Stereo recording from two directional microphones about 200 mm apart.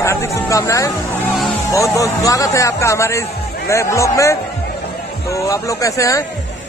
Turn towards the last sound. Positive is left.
turn(degrees=15)  # may be behind; listen again after turning